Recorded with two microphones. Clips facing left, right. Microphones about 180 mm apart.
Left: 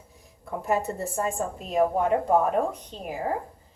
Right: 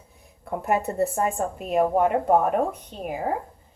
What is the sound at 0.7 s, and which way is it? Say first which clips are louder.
A woman's voice: right 4 dB; 60° right (ahead or behind).